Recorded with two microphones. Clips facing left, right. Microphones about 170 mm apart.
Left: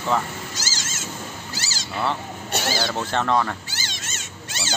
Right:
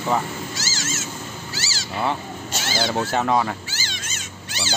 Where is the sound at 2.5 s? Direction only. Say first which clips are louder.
Left 5 dB; 60° left (ahead or behind).